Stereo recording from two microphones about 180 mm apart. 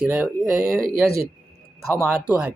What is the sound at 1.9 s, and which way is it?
Speech, 10° right (ahead or behind).